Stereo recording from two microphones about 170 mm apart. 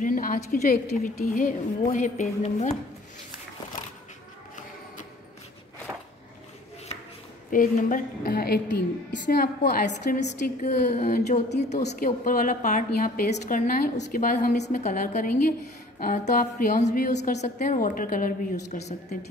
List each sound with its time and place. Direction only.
0.0 s a woman's voice: 55° left (ahead or behind)
7.5 s a woman's voice: 50° left (ahead or behind)
9.8 s a woman's voice: 45° left (ahead or behind)
12.0 s a woman's voice: 55° left (ahead or behind)